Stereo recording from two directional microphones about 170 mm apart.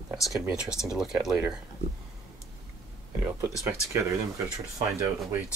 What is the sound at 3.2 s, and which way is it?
Speech, 5° right (ahead or behind).